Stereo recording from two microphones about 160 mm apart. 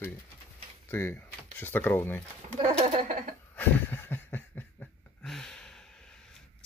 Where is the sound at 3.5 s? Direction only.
10° left (ahead or behind).